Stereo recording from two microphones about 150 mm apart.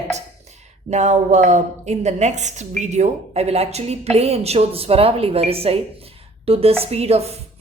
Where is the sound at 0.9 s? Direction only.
50° right (ahead or behind).